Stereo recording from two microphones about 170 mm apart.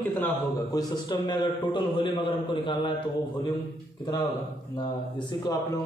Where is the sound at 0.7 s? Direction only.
25° left (ahead or behind).